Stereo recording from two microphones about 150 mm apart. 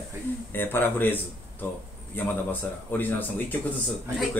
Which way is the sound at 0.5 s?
15° left (ahead or behind).